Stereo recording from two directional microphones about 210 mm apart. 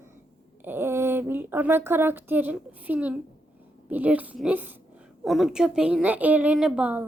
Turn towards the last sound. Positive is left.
turn(degrees=-5)  # may be behind; listen again after turning